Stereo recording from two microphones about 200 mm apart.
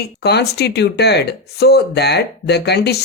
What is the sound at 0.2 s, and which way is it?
Speech, 55° left (ahead or behind).